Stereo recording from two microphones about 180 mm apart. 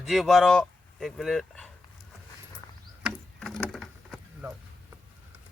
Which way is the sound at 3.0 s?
Centre (ahead or behind).